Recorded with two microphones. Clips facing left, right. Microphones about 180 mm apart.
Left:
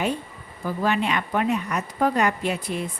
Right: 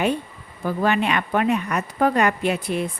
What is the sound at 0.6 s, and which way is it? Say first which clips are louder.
A woman's voice: right 3 dB; 60° right (ahead or behind).